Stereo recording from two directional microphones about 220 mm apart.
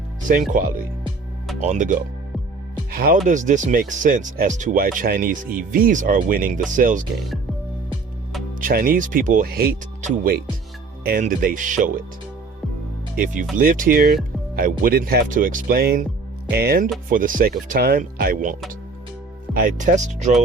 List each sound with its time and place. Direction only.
0.5 s speech: 35° right (ahead or behind)
8.6 s speech: 40° right (ahead or behind)
13.1 s speech: 35° right (ahead or behind)
19.5 s speech: 40° right (ahead or behind)